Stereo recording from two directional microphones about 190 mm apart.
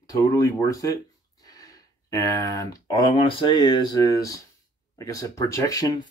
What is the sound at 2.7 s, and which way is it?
Speech, 25° left (ahead or behind).